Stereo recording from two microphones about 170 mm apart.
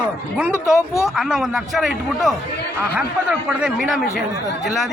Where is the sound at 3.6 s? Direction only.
5° right (ahead or behind).